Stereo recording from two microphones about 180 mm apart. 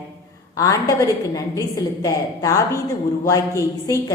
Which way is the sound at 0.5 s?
20° left (ahead or behind).